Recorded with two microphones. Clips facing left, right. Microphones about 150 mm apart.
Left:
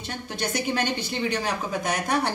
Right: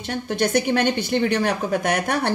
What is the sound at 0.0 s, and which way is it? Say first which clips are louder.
A woman's voice: right 8 dB; 55° right (ahead or behind).